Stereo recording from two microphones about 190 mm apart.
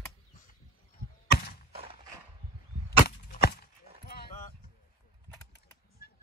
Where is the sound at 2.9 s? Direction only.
55° left (ahead or behind).